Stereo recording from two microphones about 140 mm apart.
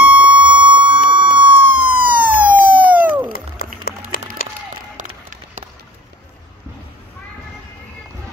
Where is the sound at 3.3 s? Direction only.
90° left.